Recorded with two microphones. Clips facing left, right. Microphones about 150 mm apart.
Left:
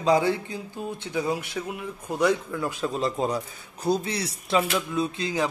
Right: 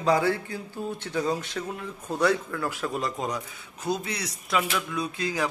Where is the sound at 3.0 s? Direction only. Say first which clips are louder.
Left 4 dB; 30° left (ahead or behind).